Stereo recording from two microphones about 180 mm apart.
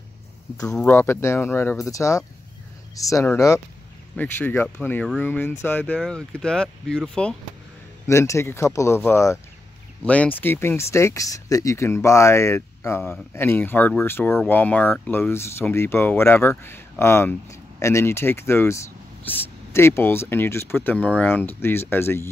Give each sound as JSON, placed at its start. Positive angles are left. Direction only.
{"t": 0.7, "sound": "speech", "side_deg": 5}
{"t": 0.9, "sound": "speech", "side_deg": 15}
{"t": 8.1, "sound": "speech", "side_deg": 15}